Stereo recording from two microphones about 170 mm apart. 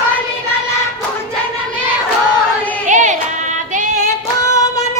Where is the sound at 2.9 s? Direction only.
45° right (ahead or behind).